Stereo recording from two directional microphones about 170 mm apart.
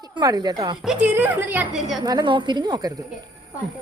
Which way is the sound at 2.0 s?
25° right (ahead or behind).